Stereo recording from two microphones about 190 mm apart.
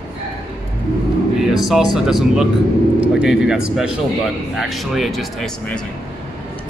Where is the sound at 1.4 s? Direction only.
Centre (ahead or behind).